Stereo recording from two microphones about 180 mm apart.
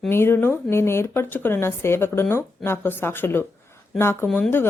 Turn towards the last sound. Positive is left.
turn(degrees=10)  # may be behind; listen again after turning